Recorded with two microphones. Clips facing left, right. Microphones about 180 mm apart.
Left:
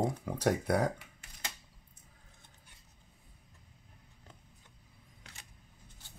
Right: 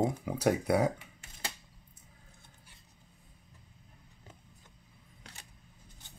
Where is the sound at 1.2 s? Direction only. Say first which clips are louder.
Right 3 dB; 30° right (ahead or behind).